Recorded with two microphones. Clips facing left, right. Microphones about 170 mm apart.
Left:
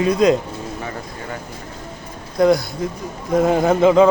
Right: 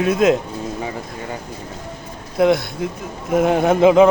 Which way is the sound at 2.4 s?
Centre (ahead or behind).